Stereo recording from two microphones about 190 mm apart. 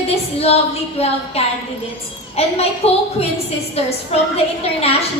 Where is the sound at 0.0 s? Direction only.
30° left (ahead or behind).